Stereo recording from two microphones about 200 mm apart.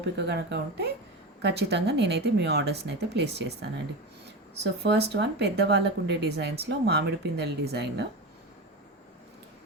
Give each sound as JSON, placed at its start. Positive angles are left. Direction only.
{"t": 0.2, "sound": "speech", "side_deg": -55}
{"t": 4.8, "sound": "speech", "side_deg": -55}